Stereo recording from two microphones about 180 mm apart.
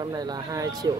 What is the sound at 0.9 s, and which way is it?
Speech, 20° right (ahead or behind).